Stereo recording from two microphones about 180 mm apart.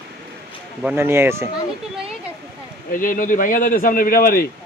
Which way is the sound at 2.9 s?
50° left (ahead or behind).